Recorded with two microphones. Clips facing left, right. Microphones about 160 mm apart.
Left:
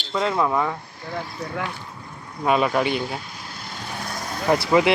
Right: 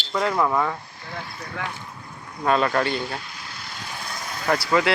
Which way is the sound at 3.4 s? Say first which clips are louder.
Left 2 dB; 45° left (ahead or behind).